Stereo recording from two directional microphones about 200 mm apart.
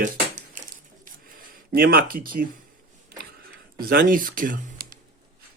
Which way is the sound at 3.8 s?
45° right (ahead or behind).